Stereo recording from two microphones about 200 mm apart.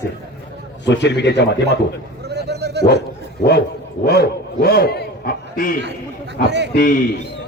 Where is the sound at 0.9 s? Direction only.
60° left (ahead or behind).